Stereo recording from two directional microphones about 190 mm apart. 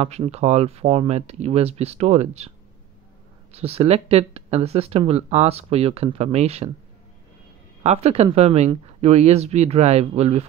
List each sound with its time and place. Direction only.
0.0 s speech: 35° right (ahead or behind)
3.5 s speech: 30° right (ahead or behind)
7.8 s speech: 35° right (ahead or behind)